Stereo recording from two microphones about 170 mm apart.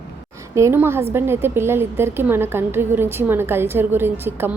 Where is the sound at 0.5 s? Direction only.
15° right (ahead or behind).